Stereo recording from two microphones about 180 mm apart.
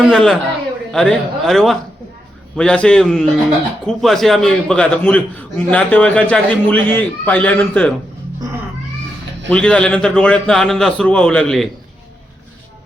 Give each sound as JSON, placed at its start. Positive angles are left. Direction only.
{"t": 0.0, "sound": "a man's voice", "side_deg": 5}
{"t": 9.5, "sound": "a man's voice", "side_deg": 5}